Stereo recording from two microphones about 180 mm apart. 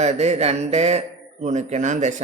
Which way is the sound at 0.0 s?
40° right (ahead or behind).